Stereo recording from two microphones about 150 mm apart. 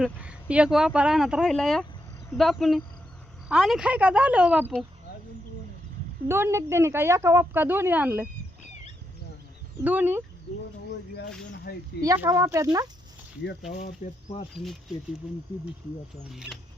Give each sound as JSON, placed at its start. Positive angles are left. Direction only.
{"t": 0.0, "sound": "speech", "side_deg": -10}
{"t": 6.2, "sound": "speech", "side_deg": -15}
{"t": 9.8, "sound": "speech", "side_deg": -10}
{"t": 11.7, "sound": "speech", "side_deg": 90}
{"t": 12.0, "sound": "speech", "side_deg": -20}
{"t": 13.7, "sound": "speech", "side_deg": 55}
{"t": 14.5, "sound": "speech", "side_deg": 0}
{"t": 16.3, "sound": "speech", "side_deg": 0}